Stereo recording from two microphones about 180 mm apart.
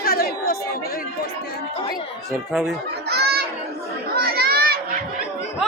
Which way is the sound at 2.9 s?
65° right (ahead or behind).